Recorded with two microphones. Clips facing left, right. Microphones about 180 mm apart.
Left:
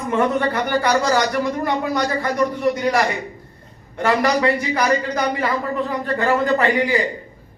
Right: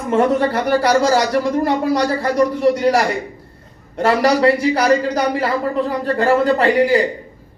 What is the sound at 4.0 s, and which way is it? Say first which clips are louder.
Speech: right 4 dB; 30° right (ahead or behind).